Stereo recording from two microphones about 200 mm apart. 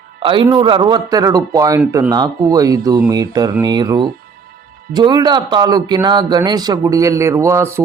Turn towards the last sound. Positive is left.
turn(degrees=-15)  # may be behind; listen again after turning